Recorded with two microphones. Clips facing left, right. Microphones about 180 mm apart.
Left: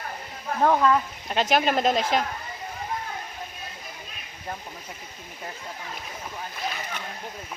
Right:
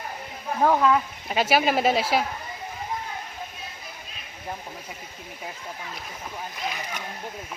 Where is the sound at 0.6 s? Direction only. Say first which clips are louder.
Even; 5° right (ahead or behind).